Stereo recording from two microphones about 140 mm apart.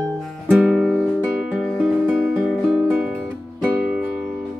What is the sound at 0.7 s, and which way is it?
Music, 5° right (ahead or behind).